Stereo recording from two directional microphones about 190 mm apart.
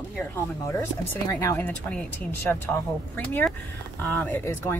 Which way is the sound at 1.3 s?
10° left (ahead or behind).